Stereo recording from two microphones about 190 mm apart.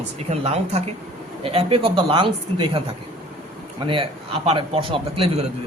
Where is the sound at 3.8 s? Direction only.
30° right (ahead or behind).